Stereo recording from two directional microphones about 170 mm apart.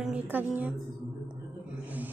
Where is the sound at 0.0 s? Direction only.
10° right (ahead or behind).